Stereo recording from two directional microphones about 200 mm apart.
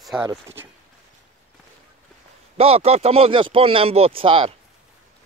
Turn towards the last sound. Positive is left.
turn(degrees=-25)  # may be behind; listen again after turning